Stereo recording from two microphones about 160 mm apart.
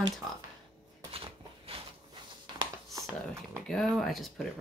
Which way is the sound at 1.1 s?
35° right (ahead or behind).